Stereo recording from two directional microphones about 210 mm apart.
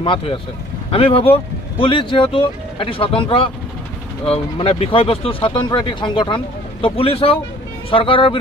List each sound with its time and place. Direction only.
0.0 s speech: 25° left (ahead or behind)